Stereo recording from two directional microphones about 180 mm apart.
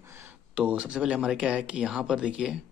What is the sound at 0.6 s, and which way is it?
A man's voice, 5° right (ahead or behind).